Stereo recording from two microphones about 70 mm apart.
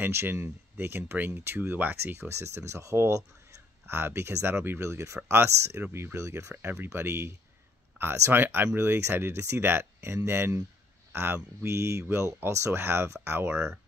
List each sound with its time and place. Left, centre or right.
0.0 s speech: right
6.5 s speech: right
11.1 s a sound: right
11.6 s speech: right